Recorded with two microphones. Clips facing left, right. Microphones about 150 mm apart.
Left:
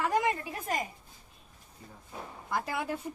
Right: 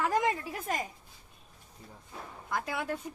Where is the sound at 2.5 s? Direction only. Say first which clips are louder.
Left 1 dB; 5° left (ahead or behind).